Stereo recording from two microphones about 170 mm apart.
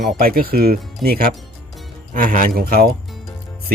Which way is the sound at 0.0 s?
60° right (ahead or behind).